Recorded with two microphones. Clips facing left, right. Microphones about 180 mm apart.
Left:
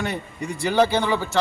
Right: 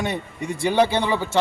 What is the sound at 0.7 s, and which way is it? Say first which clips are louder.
Speech: left 1 dB; 15° right (ahead or behind).